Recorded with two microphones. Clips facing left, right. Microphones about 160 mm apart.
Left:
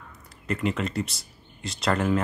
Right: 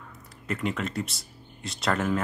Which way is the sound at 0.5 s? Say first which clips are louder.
Left 3 dB; centre (ahead or behind).